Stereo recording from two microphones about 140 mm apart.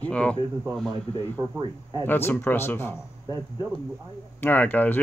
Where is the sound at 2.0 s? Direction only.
15° left (ahead or behind).